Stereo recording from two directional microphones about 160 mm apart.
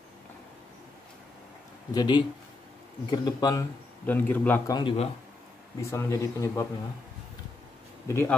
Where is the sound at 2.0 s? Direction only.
30° left (ahead or behind).